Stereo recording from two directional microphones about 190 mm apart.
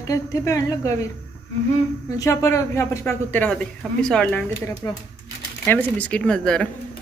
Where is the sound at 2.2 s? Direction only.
15° left (ahead or behind).